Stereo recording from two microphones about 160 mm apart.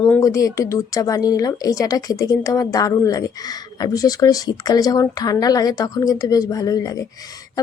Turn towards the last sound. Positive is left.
turn(degrees=20)  # may be behind; listen again after turning